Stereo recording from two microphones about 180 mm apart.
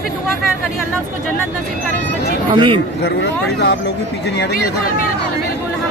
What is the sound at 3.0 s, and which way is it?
Speech, 70° left (ahead or behind).